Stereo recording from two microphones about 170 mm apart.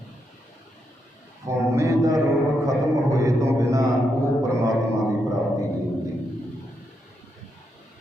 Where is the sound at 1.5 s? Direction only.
20° right (ahead or behind).